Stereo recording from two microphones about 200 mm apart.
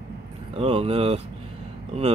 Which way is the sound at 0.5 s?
30° right (ahead or behind).